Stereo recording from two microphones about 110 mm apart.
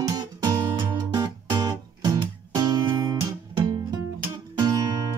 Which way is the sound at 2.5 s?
40° right (ahead or behind).